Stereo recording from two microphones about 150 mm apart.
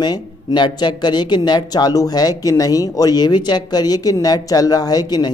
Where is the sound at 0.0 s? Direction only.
25° left (ahead or behind).